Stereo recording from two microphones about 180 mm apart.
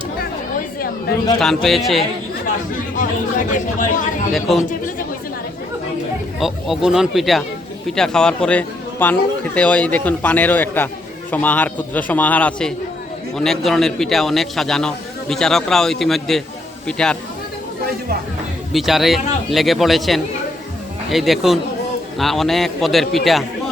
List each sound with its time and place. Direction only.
1.4 s a man's voice: centre (ahead or behind)
2.7 s chatter: 45° left (ahead or behind)
3.8 s speech: 45° left (ahead or behind)
4.3 s a man's voice: centre (ahead or behind)
6.4 s a man's voice: centre (ahead or behind)
18.7 s a man's voice: centre (ahead or behind)